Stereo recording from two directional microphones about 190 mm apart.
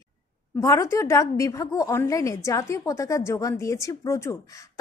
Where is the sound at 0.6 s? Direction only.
15° left (ahead or behind).